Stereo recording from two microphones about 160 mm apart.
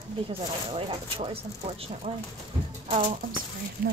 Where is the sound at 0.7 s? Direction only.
35° right (ahead or behind).